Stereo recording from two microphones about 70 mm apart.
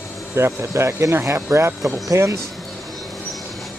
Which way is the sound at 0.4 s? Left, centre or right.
Right.